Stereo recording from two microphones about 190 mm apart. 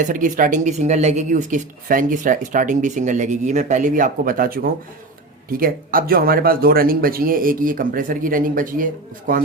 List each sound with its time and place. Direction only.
0.0 s speech: 45° right (ahead or behind)